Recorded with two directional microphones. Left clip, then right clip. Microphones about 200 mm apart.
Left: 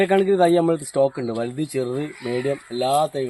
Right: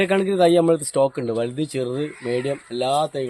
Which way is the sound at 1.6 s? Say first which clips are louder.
Even; 20° right (ahead or behind).